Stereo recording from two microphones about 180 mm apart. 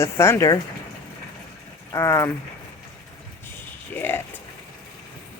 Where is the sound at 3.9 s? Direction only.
10° left (ahead or behind).